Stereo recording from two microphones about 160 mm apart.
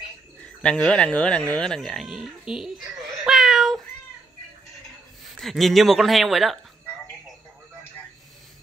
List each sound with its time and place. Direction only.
0.6 s speech: 5° left (ahead or behind)
3.3 s meow: centre (ahead or behind)
5.4 s speech: centre (ahead or behind)